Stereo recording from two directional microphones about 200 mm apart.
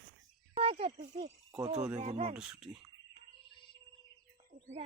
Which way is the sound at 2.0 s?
30° right (ahead or behind).